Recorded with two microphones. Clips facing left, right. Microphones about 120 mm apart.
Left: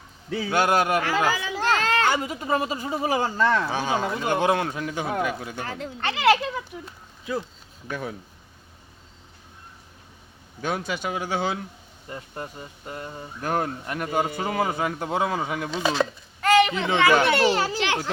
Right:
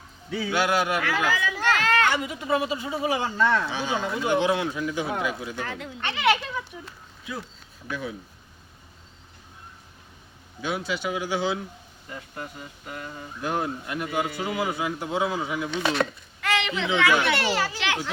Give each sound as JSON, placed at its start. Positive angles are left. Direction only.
{"t": 0.3, "sound": "speech", "side_deg": 40}
{"t": 5.6, "sound": "a child's voice", "side_deg": 35}
{"t": 7.9, "sound": "speech", "side_deg": 50}
{"t": 10.6, "sound": "speech", "side_deg": 50}
{"t": 12.0, "sound": "a child's voice", "side_deg": 35}
{"t": 13.4, "sound": "a child's voice", "side_deg": 45}